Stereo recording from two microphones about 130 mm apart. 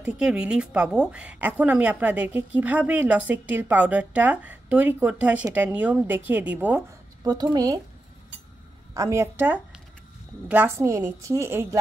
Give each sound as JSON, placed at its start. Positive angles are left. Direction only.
{"t": 0.0, "sound": "a woman's voice", "side_deg": -5}
{"t": 7.2, "sound": "a woman's voice", "side_deg": -30}
{"t": 8.9, "sound": "a woman's voice", "side_deg": -25}